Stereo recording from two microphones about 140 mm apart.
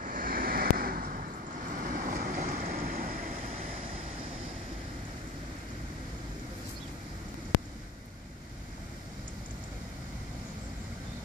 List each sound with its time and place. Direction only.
0.0 s vehicle: 85° right